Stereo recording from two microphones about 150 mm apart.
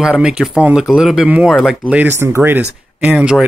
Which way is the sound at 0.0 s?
5° right (ahead or behind).